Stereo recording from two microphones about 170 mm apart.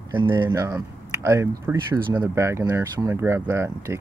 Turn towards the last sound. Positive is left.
turn(degrees=-15)  # may be behind; listen again after turning